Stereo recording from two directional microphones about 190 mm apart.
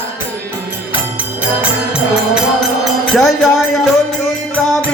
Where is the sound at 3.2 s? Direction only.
Centre (ahead or behind).